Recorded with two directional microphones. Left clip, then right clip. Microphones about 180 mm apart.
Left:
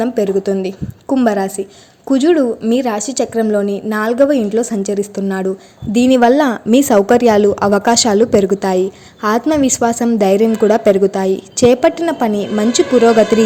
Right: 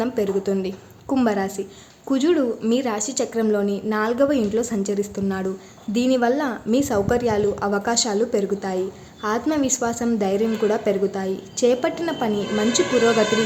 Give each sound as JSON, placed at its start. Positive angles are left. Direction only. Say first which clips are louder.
{"t": 0.0, "sound": "a woman's voice", "louder": "left 7 dB", "side_deg": 30}